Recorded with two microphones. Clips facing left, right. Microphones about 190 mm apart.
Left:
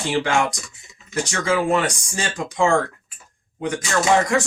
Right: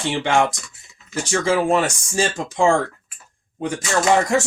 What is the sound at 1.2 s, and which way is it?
Speech, 30° right (ahead or behind).